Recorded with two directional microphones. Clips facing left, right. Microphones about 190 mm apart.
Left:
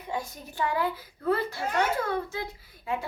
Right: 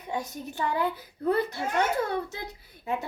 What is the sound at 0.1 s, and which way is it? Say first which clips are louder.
A child's voice: right 2 dB; 20° right (ahead or behind).